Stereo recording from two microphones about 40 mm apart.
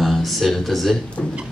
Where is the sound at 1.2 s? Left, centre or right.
Left.